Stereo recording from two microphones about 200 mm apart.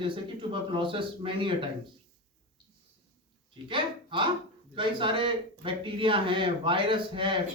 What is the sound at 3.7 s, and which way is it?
A man's voice, 25° right (ahead or behind).